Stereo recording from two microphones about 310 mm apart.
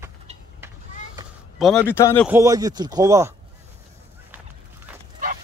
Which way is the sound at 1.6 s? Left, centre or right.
Centre.